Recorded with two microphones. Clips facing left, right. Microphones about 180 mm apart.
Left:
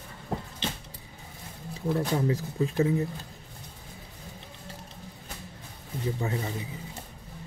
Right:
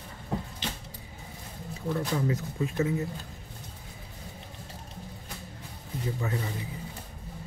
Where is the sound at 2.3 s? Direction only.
30° left (ahead or behind).